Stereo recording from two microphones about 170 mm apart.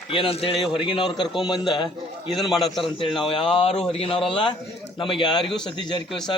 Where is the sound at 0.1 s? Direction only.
30° left (ahead or behind).